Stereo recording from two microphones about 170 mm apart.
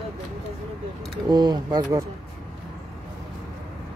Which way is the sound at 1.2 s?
25° right (ahead or behind).